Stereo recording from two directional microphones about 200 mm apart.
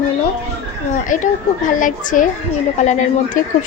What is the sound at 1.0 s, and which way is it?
Speech, 40° left (ahead or behind).